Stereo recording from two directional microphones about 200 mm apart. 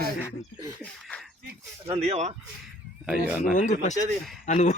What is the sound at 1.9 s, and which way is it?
Speech, 30° right (ahead or behind).